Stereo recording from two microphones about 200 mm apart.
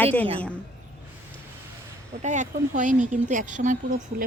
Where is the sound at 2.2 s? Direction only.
40° right (ahead or behind).